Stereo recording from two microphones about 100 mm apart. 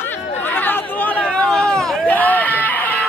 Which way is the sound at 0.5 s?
20° left (ahead or behind).